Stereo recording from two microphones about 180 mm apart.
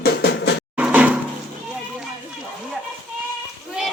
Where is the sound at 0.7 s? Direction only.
10° right (ahead or behind).